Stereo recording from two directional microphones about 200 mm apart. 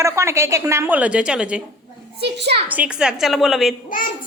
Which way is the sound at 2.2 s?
55° right (ahead or behind).